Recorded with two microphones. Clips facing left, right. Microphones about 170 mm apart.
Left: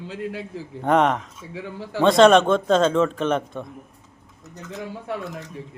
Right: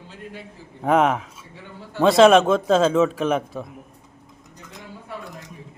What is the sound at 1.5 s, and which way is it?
Speech, 90° left.